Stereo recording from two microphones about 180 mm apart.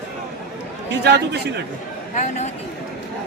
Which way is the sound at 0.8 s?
70° right (ahead or behind).